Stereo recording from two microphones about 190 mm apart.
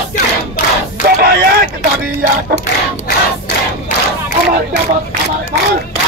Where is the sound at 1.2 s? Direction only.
50° right (ahead or behind).